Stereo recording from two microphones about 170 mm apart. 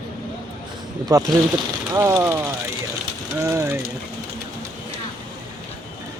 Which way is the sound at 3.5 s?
15° right (ahead or behind).